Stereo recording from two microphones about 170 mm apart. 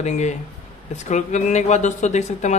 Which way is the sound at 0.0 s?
40° left (ahead or behind).